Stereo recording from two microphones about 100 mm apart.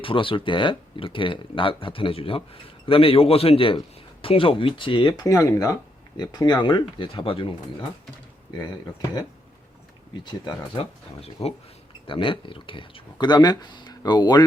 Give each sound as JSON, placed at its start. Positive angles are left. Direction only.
{"t": 0.0, "sound": "a man's voice", "side_deg": 60}
{"t": 5.2, "sound": "speech", "side_deg": 35}
{"t": 6.3, "sound": "speech", "side_deg": 45}
{"t": 10.2, "sound": "speech", "side_deg": 50}
{"t": 11.4, "sound": "speech", "side_deg": 85}
{"t": 12.0, "sound": "speech", "side_deg": 60}